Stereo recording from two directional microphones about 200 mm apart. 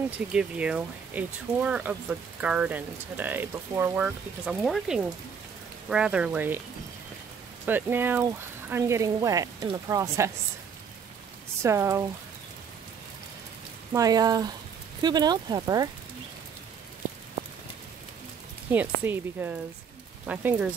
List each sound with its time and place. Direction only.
0.3 s speech: 5° right (ahead or behind)
7.6 s speech: 10° right (ahead or behind)
11.6 s speech: 15° right (ahead or behind)
13.9 s speech: 20° right (ahead or behind)
18.7 s speech: 10° right (ahead or behind)